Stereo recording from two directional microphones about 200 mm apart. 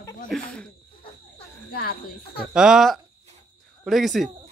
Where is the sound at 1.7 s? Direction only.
50° left (ahead or behind).